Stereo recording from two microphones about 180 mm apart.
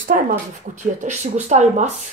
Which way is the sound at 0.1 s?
50° right (ahead or behind).